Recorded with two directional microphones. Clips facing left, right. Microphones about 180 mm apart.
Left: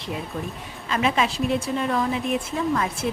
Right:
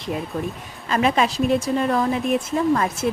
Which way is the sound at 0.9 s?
45° right (ahead or behind).